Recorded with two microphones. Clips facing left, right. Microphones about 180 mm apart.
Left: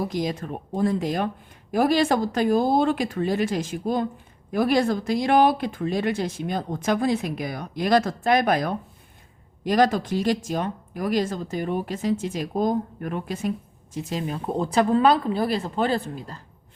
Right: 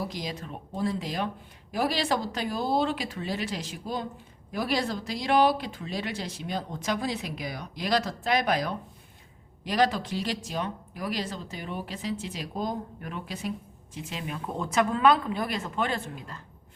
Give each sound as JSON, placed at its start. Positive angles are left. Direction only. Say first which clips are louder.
{"t": 0.0, "sound": "speech", "louder": "left 8 dB", "side_deg": 50}